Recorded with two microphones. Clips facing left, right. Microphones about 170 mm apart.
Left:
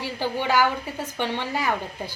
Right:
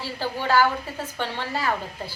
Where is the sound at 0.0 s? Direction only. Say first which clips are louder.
Left 2 dB; 15° left (ahead or behind).